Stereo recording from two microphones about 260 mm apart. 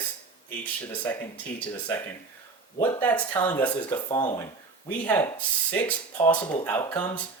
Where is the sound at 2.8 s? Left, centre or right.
Centre.